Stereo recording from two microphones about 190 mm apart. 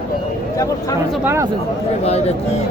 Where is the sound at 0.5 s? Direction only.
20° left (ahead or behind).